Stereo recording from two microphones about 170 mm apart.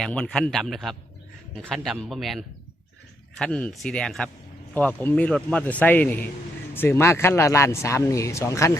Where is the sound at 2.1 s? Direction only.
Centre (ahead or behind).